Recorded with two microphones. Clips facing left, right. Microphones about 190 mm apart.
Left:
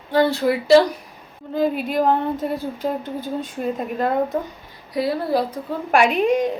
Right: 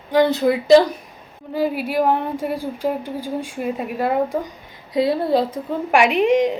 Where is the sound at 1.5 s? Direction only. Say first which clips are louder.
Even; 10° right (ahead or behind).